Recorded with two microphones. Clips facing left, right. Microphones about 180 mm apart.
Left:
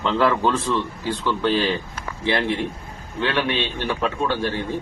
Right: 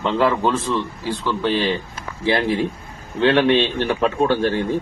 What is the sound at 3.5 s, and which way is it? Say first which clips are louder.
A man's voice: right 6 dB; 55° right (ahead or behind).